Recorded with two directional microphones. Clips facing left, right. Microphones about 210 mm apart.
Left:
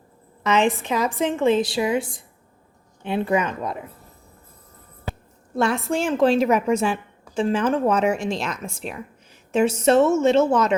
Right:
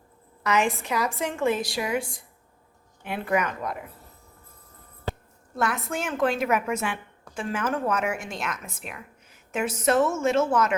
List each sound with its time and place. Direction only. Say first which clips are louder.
0.4 s a woman's voice: left 5 dB; 20° left (ahead or behind)
5.5 s a woman's voice: left 6 dB; 25° left (ahead or behind)